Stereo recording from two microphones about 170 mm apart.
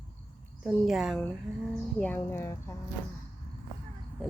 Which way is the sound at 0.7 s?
Centre (ahead or behind).